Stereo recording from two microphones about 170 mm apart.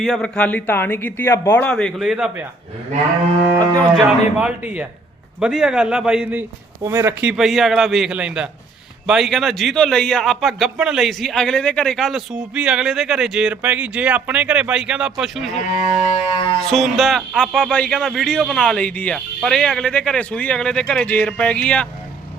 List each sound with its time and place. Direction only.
0.0 s a man's voice: 5° left (ahead or behind)
4.0 s a man's voice: 10° right (ahead or behind)
6.8 s speech: 15° right (ahead or behind)
16.1 s music: 35° left (ahead or behind)
16.6 s speech: centre (ahead or behind)